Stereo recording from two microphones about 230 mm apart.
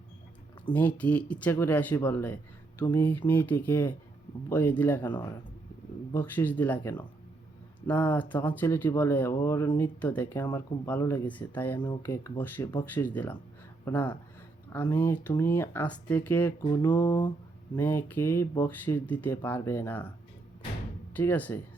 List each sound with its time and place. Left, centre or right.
0.6 s speech: centre
21.1 s speech: centre